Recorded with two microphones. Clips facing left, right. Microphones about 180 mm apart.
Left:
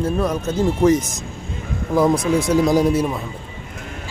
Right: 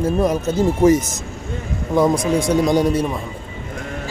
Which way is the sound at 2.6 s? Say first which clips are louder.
Even; 5° left (ahead or behind).